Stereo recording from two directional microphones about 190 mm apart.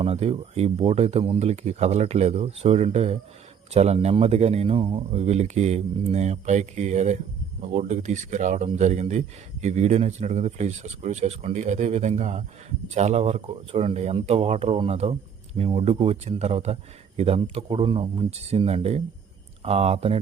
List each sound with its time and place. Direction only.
0.0 s speech: 30° right (ahead or behind)